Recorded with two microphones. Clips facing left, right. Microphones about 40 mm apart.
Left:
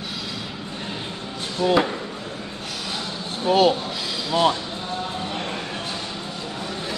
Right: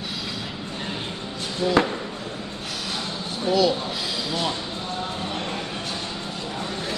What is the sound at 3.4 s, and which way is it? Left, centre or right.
Speech, left.